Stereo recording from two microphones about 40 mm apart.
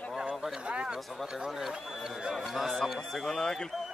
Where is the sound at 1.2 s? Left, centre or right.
Centre.